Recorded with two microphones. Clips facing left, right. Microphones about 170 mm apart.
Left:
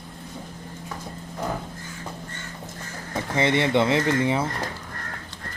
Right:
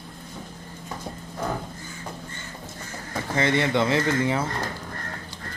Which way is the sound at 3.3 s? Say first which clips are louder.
Left 2 dB; 25° left (ahead or behind).